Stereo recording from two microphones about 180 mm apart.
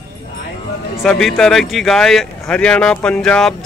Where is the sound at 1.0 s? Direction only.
Centre (ahead or behind).